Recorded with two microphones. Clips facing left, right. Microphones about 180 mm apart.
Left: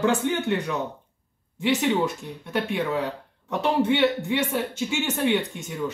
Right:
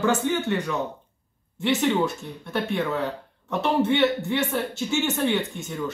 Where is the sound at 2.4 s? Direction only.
15° left (ahead or behind).